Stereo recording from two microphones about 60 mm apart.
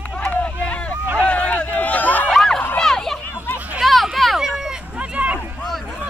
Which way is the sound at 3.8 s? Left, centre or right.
Centre.